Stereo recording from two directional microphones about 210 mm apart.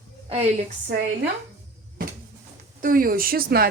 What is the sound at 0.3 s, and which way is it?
Speech, 30° right (ahead or behind).